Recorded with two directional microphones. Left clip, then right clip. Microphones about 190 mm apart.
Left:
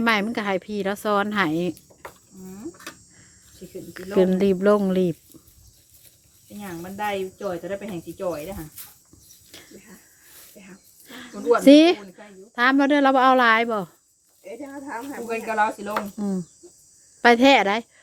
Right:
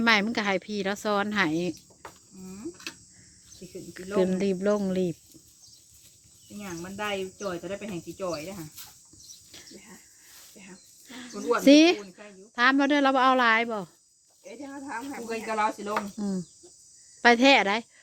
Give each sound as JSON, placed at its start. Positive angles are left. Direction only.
{"t": 0.0, "sound": "a woman's voice", "side_deg": 5}
{"t": 3.6, "sound": "a woman's voice", "side_deg": 25}
{"t": 6.6, "sound": "a woman's voice", "side_deg": 20}
{"t": 11.1, "sound": "a woman's voice", "side_deg": 10}
{"t": 14.4, "sound": "speech", "side_deg": -15}
{"t": 15.3, "sound": "speech", "side_deg": 20}
{"t": 16.1, "sound": "a woman's voice", "side_deg": 5}